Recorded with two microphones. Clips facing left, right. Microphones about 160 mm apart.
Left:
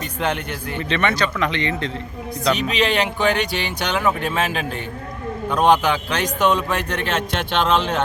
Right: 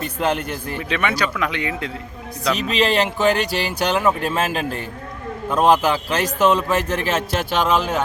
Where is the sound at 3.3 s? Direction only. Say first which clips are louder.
Right 1 dB; 40° right (ahead or behind).